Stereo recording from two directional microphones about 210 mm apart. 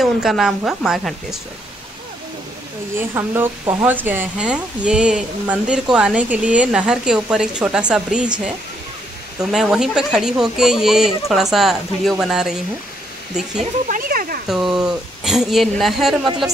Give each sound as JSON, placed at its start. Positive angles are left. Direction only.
{"t": 0.0, "sound": "speech", "side_deg": 0}
{"t": 3.0, "sound": "speech", "side_deg": -10}
{"t": 13.6, "sound": "speech", "side_deg": -40}
{"t": 14.5, "sound": "speech", "side_deg": 0}